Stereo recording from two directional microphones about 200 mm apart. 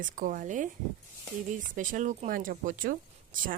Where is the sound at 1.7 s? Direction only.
40° right (ahead or behind).